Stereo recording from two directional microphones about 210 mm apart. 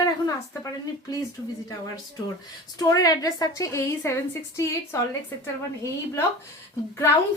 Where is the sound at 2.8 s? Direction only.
15° left (ahead or behind).